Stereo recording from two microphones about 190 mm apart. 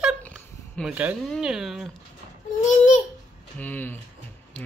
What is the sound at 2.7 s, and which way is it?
Babbling, 40° left (ahead or behind).